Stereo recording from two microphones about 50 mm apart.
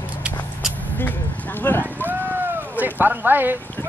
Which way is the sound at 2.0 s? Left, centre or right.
Right.